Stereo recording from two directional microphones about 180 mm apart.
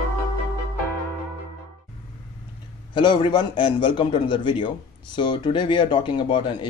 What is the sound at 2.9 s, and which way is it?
Speech, 25° left (ahead or behind).